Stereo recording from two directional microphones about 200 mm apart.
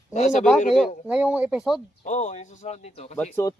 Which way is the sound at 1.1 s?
5° right (ahead or behind).